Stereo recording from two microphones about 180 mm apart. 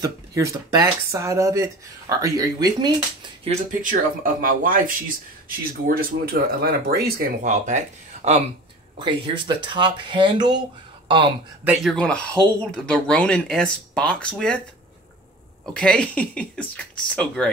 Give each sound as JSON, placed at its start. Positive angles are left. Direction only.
{"t": 0.0, "sound": "speech", "side_deg": -20}
{"t": 3.4, "sound": "speech", "side_deg": -50}
{"t": 7.5, "sound": "speech", "side_deg": -40}
{"t": 8.9, "sound": "speech", "side_deg": -25}
{"t": 11.6, "sound": "speech", "side_deg": -5}
{"t": 15.7, "sound": "speech", "side_deg": 5}